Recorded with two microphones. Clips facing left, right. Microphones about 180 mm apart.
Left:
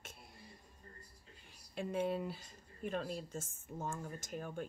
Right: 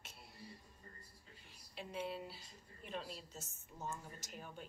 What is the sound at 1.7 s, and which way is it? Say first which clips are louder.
Speech: left 8 dB; 50° left (ahead or behind).